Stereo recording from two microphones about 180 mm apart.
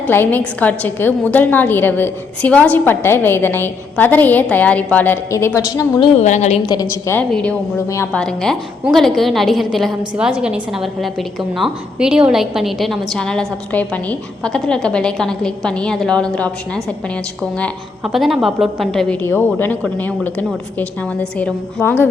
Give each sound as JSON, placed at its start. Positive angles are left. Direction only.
{"t": 0.1, "sound": "a woman's voice", "side_deg": 10}
{"t": 6.1, "sound": "a woman's voice", "side_deg": 40}
{"t": 7.1, "sound": "a woman's voice", "side_deg": 5}
{"t": 7.9, "sound": "a woman's voice", "side_deg": 15}
{"t": 8.2, "sound": "a woman's voice", "side_deg": 5}